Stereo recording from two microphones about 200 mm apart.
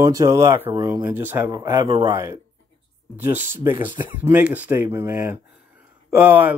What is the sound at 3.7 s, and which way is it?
Speech, 25° right (ahead or behind).